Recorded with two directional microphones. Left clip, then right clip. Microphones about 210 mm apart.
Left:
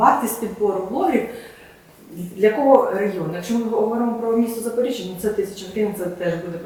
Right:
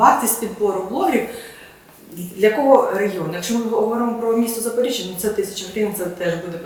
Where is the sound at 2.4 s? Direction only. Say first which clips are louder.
Right 1 dB; 15° left (ahead or behind).